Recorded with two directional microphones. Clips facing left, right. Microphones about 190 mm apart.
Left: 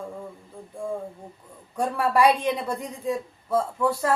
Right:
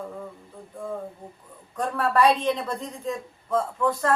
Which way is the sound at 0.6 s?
10° left (ahead or behind).